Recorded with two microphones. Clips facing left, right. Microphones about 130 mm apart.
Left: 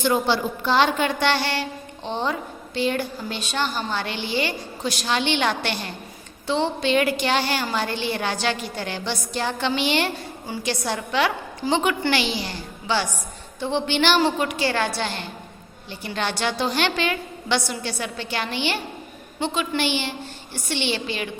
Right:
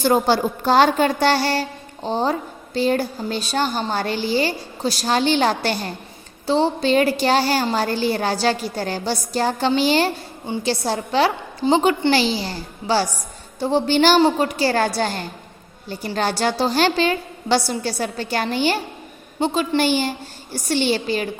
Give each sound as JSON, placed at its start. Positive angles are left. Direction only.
{"t": 0.0, "sound": "a woman's voice", "side_deg": -40}